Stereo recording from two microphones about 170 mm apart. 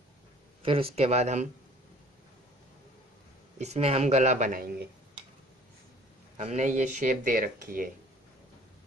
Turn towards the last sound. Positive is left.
turn(degrees=-55)  # may be behind; listen again after turning